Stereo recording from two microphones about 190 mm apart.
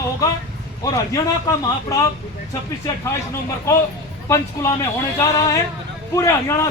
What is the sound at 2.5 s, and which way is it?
Speech, 15° left (ahead or behind).